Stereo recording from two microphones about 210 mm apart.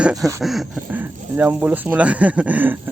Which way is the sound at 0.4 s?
Centre (ahead or behind).